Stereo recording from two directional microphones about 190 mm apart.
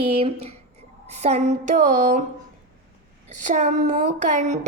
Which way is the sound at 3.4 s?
40° right (ahead or behind).